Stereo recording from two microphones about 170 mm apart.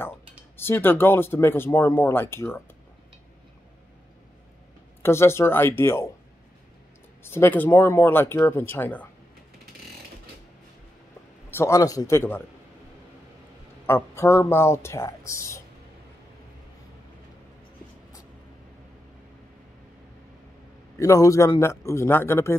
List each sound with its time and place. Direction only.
0.6 s speech: 10° left (ahead or behind)
5.0 s speech: 15° left (ahead or behind)
7.2 s speech: 15° left (ahead or behind)
11.5 s speech: 15° left (ahead or behind)
13.8 s speech: 15° left (ahead or behind)
21.0 s speech: 20° left (ahead or behind)